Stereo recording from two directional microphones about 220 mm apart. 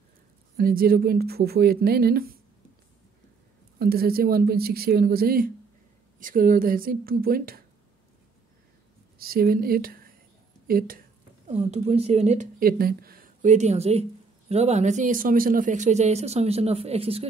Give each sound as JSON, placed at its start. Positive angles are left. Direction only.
{"t": 0.6, "sound": "speech", "side_deg": -40}
{"t": 3.8, "sound": "speech", "side_deg": -45}
{"t": 9.2, "sound": "speech", "side_deg": -45}